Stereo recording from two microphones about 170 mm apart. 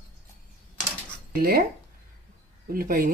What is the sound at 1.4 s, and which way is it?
Speech, 60° right (ahead or behind).